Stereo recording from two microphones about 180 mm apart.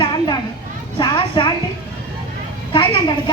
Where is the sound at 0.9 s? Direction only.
25° left (ahead or behind).